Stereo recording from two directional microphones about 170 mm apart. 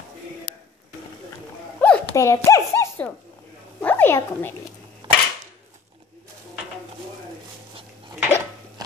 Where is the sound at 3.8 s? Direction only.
10° left (ahead or behind).